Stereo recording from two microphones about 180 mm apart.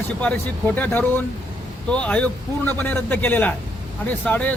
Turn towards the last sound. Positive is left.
turn(degrees=10)  # may be behind; listen again after turning